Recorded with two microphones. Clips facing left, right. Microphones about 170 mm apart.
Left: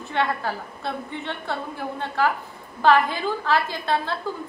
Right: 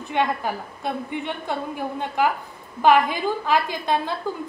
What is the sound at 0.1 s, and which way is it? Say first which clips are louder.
A woman's voice: right 2 dB; 15° right (ahead or behind).